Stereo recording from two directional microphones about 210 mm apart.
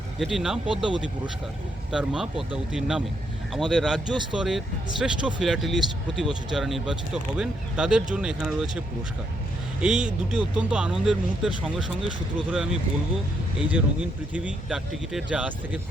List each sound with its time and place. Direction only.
0.2 s speech: centre (ahead or behind)
1.9 s speech: 5° right (ahead or behind)
9.8 s speech: 5° right (ahead or behind)